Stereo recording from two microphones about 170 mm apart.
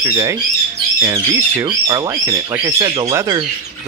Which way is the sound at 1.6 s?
25° right (ahead or behind).